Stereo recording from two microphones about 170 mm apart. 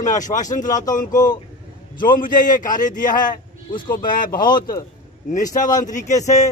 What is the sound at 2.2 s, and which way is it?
A man's voice, 50° left (ahead or behind).